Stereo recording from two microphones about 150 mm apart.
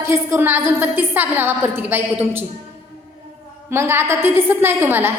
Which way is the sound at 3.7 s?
15° right (ahead or behind).